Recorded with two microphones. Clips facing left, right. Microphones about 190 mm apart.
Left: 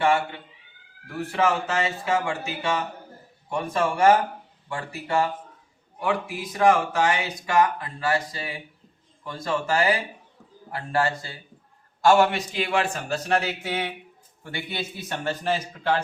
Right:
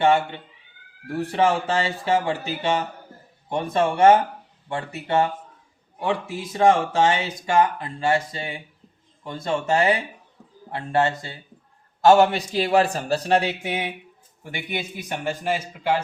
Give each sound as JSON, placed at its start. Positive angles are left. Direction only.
{"t": 0.0, "sound": "speech", "side_deg": -25}
{"t": 12.4, "sound": "speech", "side_deg": -35}
{"t": 13.6, "sound": "a man's voice", "side_deg": -15}